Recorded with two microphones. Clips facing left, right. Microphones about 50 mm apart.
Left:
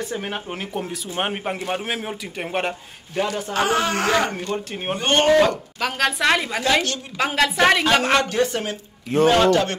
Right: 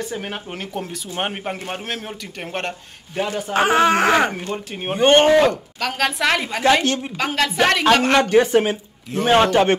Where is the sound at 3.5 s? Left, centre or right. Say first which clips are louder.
Right 7 dB; right.